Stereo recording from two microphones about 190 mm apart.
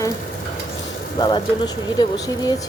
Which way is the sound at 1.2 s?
25° left (ahead or behind).